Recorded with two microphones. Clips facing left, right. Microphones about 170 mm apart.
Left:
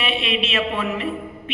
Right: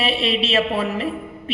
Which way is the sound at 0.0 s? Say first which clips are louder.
Right 3 dB; 35° right (ahead or behind).